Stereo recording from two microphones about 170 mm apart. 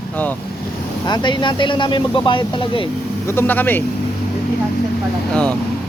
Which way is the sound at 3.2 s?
15° left (ahead or behind).